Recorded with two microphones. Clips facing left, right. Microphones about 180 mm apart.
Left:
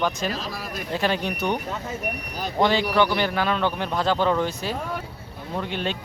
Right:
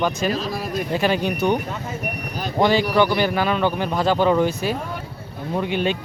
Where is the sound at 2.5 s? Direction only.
5° right (ahead or behind).